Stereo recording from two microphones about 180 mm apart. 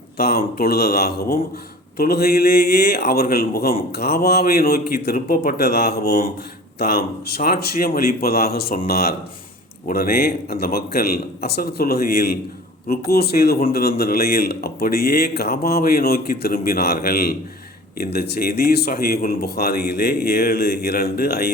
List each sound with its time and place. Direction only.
0.2 s speech: 60° left (ahead or behind)
5.1 s speech: 45° left (ahead or behind)